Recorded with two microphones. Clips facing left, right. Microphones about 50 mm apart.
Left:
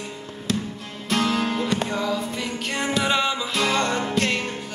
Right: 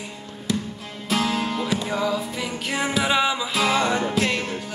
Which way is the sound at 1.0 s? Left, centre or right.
Centre.